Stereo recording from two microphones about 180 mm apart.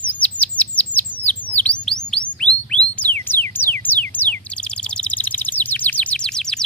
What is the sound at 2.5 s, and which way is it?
Chirp tone, 20° right (ahead or behind).